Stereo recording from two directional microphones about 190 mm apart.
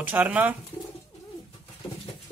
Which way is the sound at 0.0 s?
10° right (ahead or behind).